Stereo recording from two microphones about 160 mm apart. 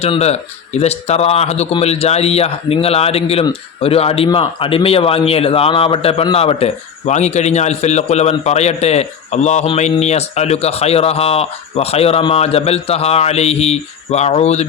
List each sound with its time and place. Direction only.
0.0 s a man's voice: 40° left (ahead or behind)